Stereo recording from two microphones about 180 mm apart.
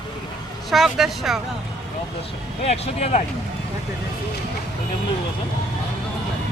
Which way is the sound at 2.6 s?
40° left (ahead or behind).